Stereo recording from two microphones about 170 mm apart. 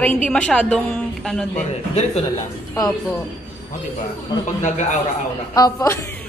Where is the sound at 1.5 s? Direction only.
40° left (ahead or behind).